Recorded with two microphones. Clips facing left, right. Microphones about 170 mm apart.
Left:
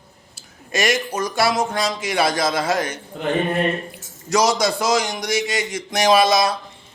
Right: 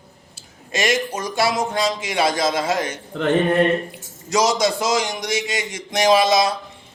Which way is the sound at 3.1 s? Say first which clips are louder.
Right 5 dB; 75° right (ahead or behind).